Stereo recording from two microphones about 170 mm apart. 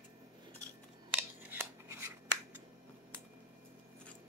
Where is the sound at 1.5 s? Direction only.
15° right (ahead or behind).